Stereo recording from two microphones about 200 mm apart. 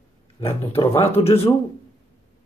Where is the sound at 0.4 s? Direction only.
30° left (ahead or behind).